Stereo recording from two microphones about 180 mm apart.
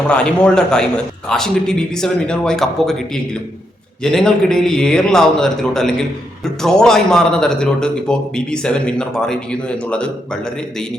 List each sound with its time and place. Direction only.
0.1 s a man's voice: 5° left (ahead or behind)